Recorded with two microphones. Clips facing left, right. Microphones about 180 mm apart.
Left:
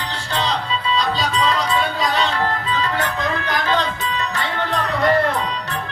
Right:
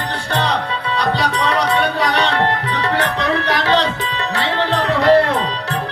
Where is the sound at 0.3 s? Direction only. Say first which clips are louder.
Right 2 dB; 65° right (ahead or behind).